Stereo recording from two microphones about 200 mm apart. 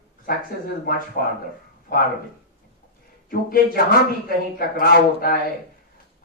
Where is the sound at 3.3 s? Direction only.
45° left (ahead or behind).